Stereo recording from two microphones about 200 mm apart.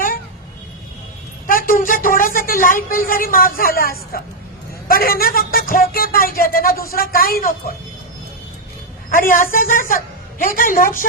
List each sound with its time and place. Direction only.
1.5 s speech: 45° left (ahead or behind)
9.0 s a woman's voice: 45° left (ahead or behind)